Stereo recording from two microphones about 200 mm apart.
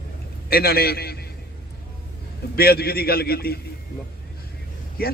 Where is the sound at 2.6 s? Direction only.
50° left (ahead or behind).